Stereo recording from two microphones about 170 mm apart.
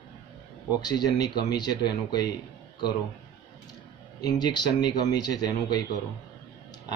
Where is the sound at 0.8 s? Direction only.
25° left (ahead or behind).